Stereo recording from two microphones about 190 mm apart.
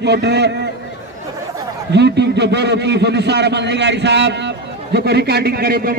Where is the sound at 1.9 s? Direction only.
65° right (ahead or behind).